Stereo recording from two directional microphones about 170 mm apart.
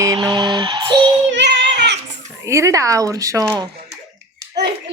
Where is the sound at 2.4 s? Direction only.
15° right (ahead or behind).